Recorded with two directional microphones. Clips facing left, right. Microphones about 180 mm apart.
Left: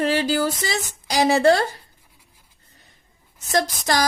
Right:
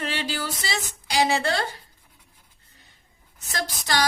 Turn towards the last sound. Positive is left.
turn(degrees=40)  # may be behind; listen again after turning